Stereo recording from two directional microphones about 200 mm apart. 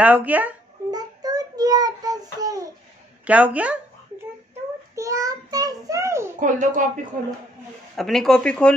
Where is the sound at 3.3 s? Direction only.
5° right (ahead or behind).